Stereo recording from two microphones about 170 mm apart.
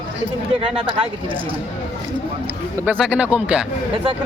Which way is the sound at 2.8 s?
5° right (ahead or behind).